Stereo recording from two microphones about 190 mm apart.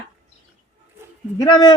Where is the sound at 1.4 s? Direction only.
25° left (ahead or behind).